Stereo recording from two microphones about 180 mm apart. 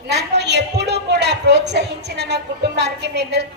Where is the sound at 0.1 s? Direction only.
70° right (ahead or behind).